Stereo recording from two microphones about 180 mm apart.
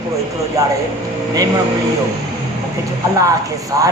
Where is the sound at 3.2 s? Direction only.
20° right (ahead or behind).